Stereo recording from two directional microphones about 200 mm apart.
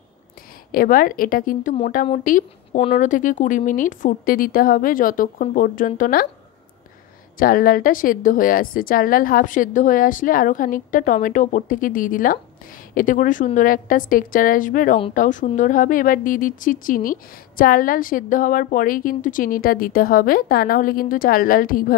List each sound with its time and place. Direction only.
0.7 s a woman's voice: 45° left (ahead or behind)
7.3 s a woman's voice: 45° left (ahead or behind)